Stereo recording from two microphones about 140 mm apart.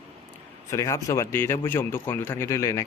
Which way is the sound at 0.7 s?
20° left (ahead or behind).